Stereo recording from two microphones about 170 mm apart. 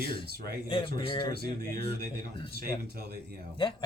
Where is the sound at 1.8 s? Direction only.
70° right (ahead or behind).